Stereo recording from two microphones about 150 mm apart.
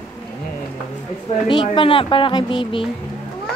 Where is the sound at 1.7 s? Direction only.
35° left (ahead or behind).